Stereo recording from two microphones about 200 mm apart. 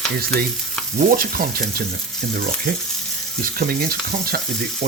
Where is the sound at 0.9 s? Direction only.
45° right (ahead or behind).